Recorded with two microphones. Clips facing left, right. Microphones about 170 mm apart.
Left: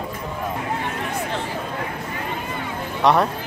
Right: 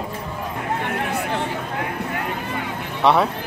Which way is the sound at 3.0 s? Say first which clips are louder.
Even; centre (ahead or behind).